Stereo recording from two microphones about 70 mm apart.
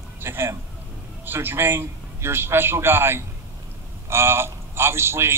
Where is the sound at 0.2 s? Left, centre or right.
Right.